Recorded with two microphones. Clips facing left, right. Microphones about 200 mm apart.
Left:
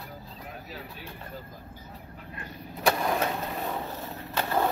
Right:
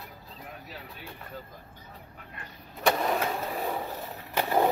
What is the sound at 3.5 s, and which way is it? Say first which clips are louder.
Vehicle: right 1 dB; 10° right (ahead or behind).